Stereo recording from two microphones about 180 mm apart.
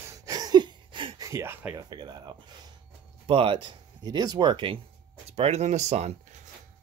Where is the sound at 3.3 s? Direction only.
30° right (ahead or behind).